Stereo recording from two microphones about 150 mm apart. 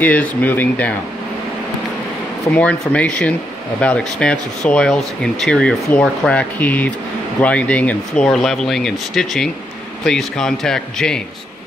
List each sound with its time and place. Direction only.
0.0 s speech: 10° left (ahead or behind)
2.5 s speech: 10° left (ahead or behind)